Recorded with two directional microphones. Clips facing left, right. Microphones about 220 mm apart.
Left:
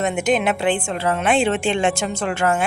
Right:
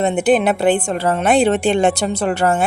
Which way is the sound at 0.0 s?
35° right (ahead or behind).